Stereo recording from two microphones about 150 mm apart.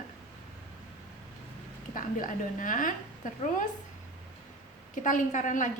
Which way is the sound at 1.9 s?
60° left (ahead or behind).